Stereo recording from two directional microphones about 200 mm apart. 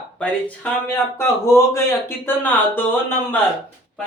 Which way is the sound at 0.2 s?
5° left (ahead or behind).